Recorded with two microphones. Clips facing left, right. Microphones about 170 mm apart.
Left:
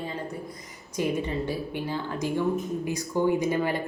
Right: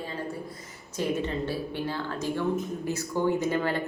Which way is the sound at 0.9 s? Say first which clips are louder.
Left 1 dB; 15° left (ahead or behind).